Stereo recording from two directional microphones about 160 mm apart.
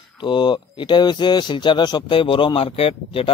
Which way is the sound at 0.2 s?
30° left (ahead or behind).